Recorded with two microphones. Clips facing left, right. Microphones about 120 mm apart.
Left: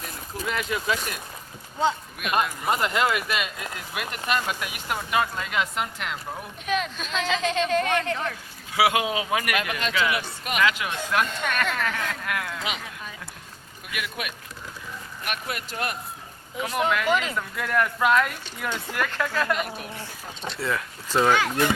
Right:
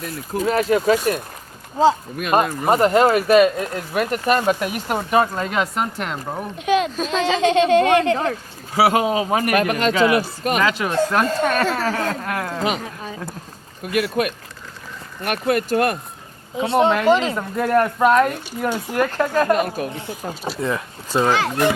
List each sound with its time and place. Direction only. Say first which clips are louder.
0.3 s speech: right 11 dB; 35° right (ahead or behind)
16.6 s speech: right 8 dB; 30° right (ahead or behind); by 20.4 s 50° right (ahead or behind)
20.6 s speech: right 3 dB; 20° right (ahead or behind)